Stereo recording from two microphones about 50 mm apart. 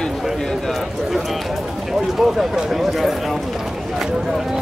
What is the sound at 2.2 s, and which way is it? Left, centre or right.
Speech, centre.